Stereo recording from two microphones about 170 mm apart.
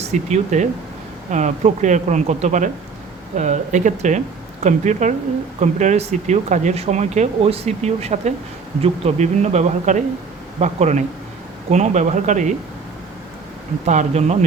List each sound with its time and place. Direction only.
0.1 s speech: 45° right (ahead or behind)
13.8 s speech: 45° right (ahead or behind)